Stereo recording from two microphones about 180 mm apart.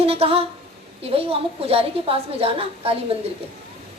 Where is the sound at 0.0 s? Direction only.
30° right (ahead or behind).